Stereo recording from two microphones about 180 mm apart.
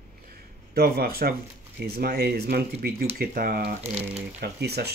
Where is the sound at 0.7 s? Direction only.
60° right (ahead or behind).